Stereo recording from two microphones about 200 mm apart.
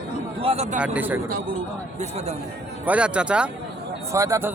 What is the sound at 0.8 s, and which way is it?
Speech, 5° right (ahead or behind).